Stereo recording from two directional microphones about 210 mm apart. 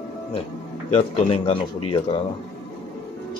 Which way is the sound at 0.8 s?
30° left (ahead or behind).